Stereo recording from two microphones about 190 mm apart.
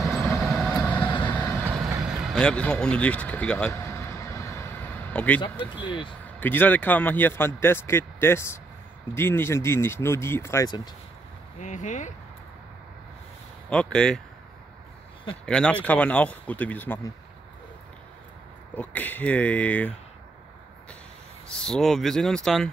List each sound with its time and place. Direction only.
0.0 s vehicle: centre (ahead or behind)
2.3 s a man's voice: 5° left (ahead or behind)
4.3 s vehicle: 15° left (ahead or behind)
5.1 s speech: 10° left (ahead or behind)
5.8 s speech: 25° left (ahead or behind)
6.4 s a man's voice: 10° left (ahead or behind)
11.6 s speech: 40° left (ahead or behind)
13.7 s speech: 5° left (ahead or behind)
15.4 s a man's voice: 5° left (ahead or behind)
18.8 s a man's voice: 10° left (ahead or behind)
21.5 s speech: 5° left (ahead or behind)